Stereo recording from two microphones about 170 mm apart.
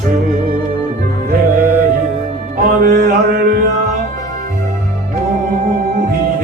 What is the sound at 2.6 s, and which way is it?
Mantra, 55° right (ahead or behind).